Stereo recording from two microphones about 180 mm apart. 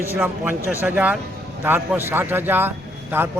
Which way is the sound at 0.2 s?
10° right (ahead or behind).